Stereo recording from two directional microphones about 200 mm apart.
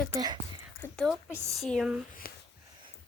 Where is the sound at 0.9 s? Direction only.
Centre (ahead or behind).